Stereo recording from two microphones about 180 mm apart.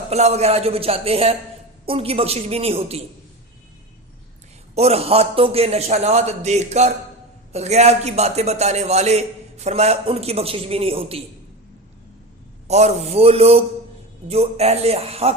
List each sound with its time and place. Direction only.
0.1 s a man's voice: 35° right (ahead or behind)
4.7 s a man's voice: 35° right (ahead or behind)
12.6 s a man's voice: 35° right (ahead or behind)